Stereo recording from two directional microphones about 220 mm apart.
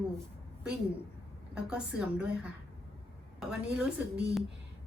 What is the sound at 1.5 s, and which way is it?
Speech, 5° right (ahead or behind).